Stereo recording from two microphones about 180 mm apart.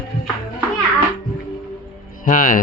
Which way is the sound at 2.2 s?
50° left (ahead or behind).